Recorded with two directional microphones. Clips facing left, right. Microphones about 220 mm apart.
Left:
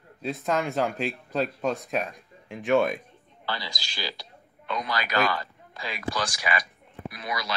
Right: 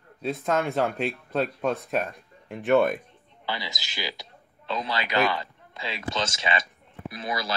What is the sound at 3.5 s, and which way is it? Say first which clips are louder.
A man's voice: right 1 dB; 20° right (ahead or behind).